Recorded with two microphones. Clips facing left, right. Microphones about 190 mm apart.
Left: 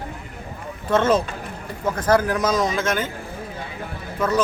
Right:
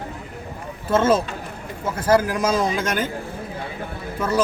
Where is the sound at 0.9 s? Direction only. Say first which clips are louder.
Even; 5° right (ahead or behind).